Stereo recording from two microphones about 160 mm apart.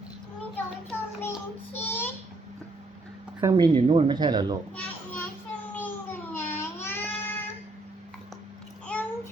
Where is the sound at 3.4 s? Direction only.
25° right (ahead or behind).